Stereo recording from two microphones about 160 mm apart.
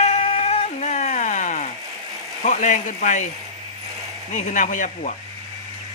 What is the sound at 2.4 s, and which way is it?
Speech, 50° left (ahead or behind).